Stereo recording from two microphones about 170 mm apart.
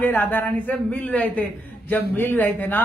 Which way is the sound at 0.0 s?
10° left (ahead or behind).